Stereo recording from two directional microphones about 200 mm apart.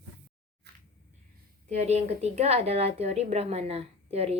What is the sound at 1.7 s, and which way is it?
A woman's voice, 35° right (ahead or behind).